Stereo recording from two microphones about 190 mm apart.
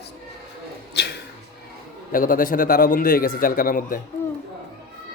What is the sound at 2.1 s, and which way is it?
A man's voice, 45° left (ahead or behind).